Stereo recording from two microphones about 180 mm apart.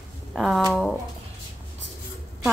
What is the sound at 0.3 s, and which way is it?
Speech, centre (ahead or behind).